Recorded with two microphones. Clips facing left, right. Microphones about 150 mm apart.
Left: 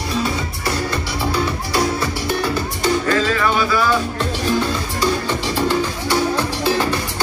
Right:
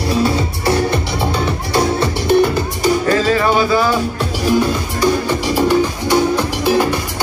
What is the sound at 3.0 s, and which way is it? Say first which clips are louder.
Music: right 4 dB; 35° right (ahead or behind).